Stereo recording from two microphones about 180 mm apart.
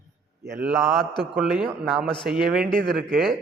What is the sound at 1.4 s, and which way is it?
A man's voice, 5° right (ahead or behind).